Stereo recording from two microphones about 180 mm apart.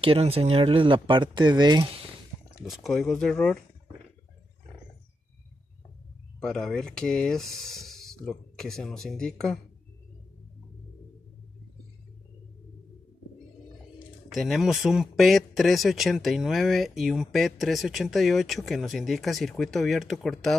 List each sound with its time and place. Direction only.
0.0 s speech: 30° right (ahead or behind)
2.6 s speech: centre (ahead or behind)
6.4 s speech: 5° left (ahead or behind)
14.3 s speech: centre (ahead or behind)